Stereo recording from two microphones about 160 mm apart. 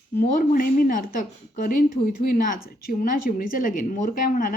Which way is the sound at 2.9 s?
60° left (ahead or behind).